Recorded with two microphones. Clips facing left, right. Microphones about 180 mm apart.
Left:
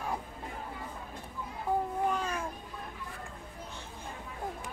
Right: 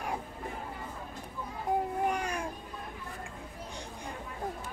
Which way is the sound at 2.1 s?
15° right (ahead or behind).